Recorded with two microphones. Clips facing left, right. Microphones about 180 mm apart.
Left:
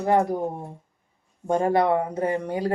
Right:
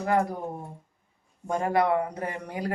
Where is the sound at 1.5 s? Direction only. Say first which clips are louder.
Left 4 dB; 30° left (ahead or behind).